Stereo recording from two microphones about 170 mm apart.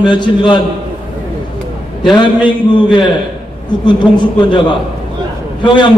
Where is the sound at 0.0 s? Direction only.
25° left (ahead or behind).